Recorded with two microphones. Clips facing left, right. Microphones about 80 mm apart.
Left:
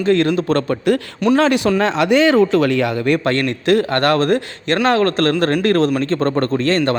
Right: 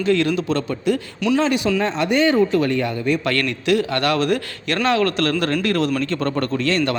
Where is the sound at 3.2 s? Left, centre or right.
Left.